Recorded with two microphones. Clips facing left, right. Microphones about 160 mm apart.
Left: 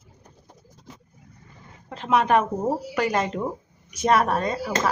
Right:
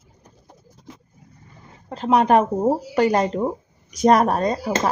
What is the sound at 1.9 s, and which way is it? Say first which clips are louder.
Speech: right 4 dB; 35° right (ahead or behind).